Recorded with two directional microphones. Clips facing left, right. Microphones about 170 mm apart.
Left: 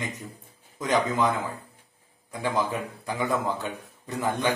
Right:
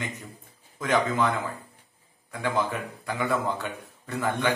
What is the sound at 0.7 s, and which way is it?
Speech, 15° left (ahead or behind).